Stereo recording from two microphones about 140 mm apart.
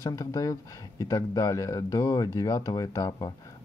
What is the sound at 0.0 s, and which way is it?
Speech, 25° left (ahead or behind).